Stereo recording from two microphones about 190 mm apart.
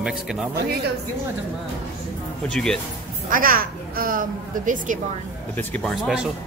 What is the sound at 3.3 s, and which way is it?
Speech, 50° right (ahead or behind).